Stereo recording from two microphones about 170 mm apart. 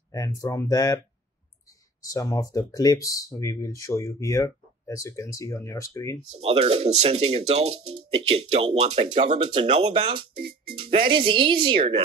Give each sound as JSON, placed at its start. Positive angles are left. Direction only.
{"t": 0.1, "sound": "speech", "side_deg": 20}
{"t": 2.0, "sound": "speech", "side_deg": 20}
{"t": 6.4, "sound": "speech", "side_deg": -35}
{"t": 9.4, "sound": "speech", "side_deg": -30}